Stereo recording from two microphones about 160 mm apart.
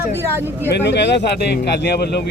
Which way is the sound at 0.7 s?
90° left.